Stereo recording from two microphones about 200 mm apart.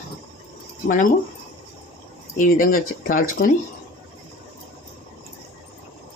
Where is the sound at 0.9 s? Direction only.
40° left (ahead or behind).